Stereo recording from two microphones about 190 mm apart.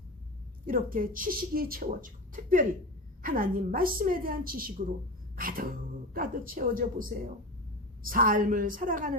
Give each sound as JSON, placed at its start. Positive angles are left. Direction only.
{"t": 0.6, "sound": "speech", "side_deg": -45}
{"t": 8.1, "sound": "speech", "side_deg": -45}